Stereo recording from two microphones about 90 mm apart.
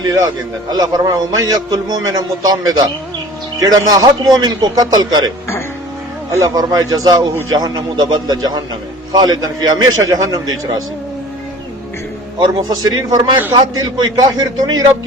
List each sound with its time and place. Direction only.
0.7 s a man's voice: 50° right (ahead or behind)
6.4 s a man's voice: 45° right (ahead or behind)
12.4 s a man's voice: 50° right (ahead or behind)